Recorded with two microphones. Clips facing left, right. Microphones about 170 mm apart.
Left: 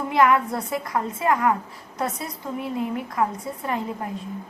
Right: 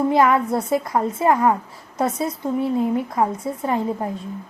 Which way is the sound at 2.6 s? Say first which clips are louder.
Right 6 dB; 30° right (ahead or behind).